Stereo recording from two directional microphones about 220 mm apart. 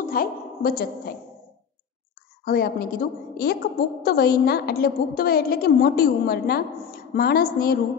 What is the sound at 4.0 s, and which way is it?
A woman's voice, 45° left (ahead or behind).